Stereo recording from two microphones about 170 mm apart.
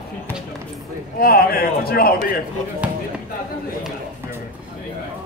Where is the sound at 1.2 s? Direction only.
60° left (ahead or behind).